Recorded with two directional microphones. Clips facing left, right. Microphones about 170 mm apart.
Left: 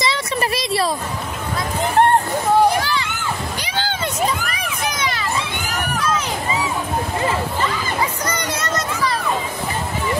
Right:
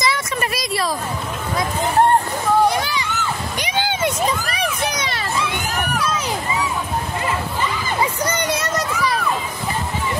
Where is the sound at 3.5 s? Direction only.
15° right (ahead or behind).